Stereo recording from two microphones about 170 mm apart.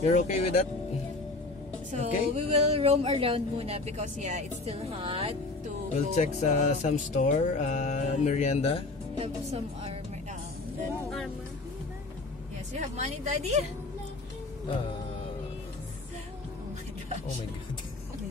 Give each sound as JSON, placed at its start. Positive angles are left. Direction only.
{"t": 0.0, "sound": "music", "side_deg": 45}
{"t": 1.9, "sound": "a woman's voice", "side_deg": -40}
{"t": 6.1, "sound": "music", "side_deg": 45}
{"t": 9.1, "sound": "a woman's voice", "side_deg": -35}
{"t": 12.7, "sound": "a woman's voice", "side_deg": -40}